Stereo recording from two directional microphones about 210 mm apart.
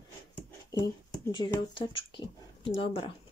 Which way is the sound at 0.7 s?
20° left (ahead or behind).